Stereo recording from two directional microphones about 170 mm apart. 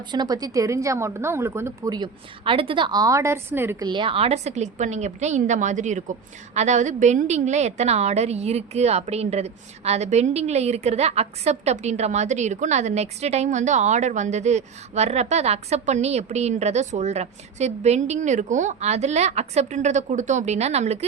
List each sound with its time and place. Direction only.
0.1 s a woman's voice: 25° right (ahead or behind)
3.8 s a woman's voice: 30° right (ahead or behind)